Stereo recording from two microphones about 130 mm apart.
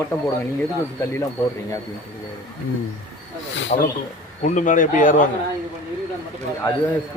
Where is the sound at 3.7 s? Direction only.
90° left.